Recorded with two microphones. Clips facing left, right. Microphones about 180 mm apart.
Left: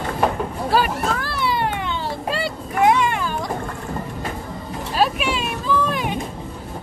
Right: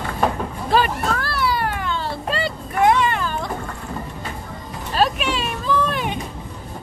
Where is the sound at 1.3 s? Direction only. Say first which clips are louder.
Even; 25° left (ahead or behind).